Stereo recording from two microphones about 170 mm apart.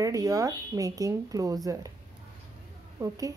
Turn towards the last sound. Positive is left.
turn(degrees=-20)  # may be behind; listen again after turning